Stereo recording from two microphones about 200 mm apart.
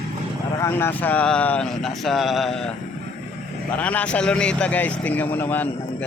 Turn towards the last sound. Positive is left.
turn(degrees=10)  # may be behind; listen again after turning